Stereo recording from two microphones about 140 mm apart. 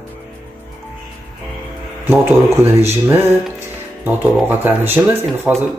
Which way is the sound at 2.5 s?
15° right (ahead or behind).